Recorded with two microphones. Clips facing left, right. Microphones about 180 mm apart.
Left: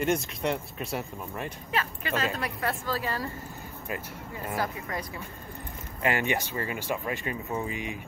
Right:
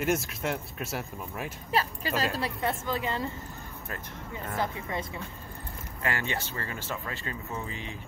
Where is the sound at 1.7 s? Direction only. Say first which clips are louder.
Right 3 dB; 35° right (ahead or behind).